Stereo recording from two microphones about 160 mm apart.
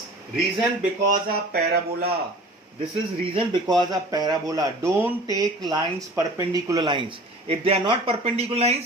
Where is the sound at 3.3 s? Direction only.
30° right (ahead or behind).